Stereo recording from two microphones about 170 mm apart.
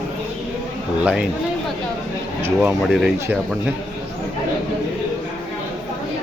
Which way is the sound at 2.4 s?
15° right (ahead or behind).